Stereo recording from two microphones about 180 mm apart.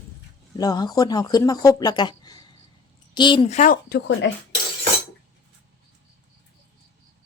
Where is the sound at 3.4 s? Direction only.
45° left (ahead or behind); by 4.3 s 80° left.